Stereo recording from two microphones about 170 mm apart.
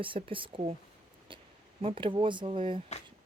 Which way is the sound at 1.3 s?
30° right (ahead or behind).